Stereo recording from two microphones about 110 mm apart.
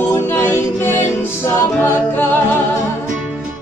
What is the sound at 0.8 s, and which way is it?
Music, 20° left (ahead or behind).